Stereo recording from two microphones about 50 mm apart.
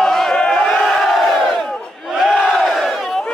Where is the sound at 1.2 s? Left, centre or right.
Centre.